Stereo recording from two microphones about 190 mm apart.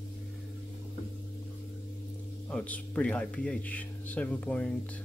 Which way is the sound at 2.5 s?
5° left (ahead or behind).